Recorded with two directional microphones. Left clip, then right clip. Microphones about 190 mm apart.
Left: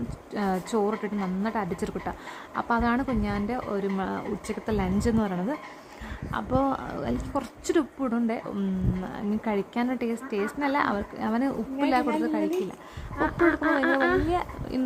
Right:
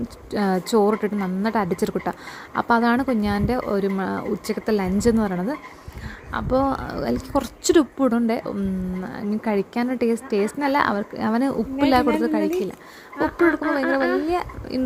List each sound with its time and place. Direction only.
0.3 s a woman's voice: 20° right (ahead or behind)
13.1 s speech: 5° right (ahead or behind)
14.3 s a woman's voice: 15° right (ahead or behind)